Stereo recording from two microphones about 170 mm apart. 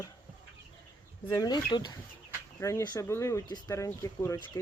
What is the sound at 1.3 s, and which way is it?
Speech, 25° left (ahead or behind).